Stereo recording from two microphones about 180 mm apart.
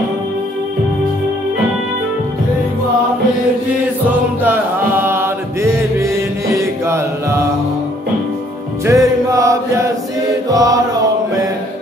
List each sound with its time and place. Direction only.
4.1 s chant: 10° right (ahead or behind)
8.8 s music: 15° right (ahead or behind)
10.5 s mantra: 20° right (ahead or behind)